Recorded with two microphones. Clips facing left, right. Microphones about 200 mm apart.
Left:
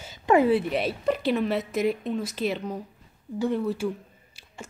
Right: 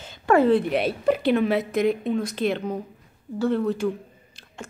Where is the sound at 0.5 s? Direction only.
Centre (ahead or behind).